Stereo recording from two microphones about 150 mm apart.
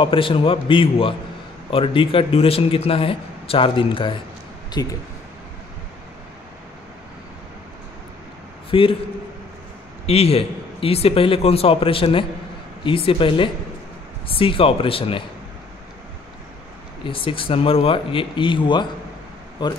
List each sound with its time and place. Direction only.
0.0 s speech: 35° left (ahead or behind)
8.6 s a man's voice: 35° left (ahead or behind)
10.0 s speech: 40° left (ahead or behind)
17.0 s speech: 35° left (ahead or behind)